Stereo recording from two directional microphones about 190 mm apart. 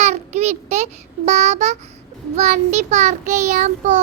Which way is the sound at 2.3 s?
40° right (ahead or behind).